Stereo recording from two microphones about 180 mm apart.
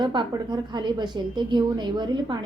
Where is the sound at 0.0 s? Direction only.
25° right (ahead or behind).